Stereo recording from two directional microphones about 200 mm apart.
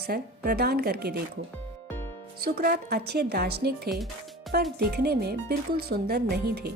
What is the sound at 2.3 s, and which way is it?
Speech, 50° right (ahead or behind).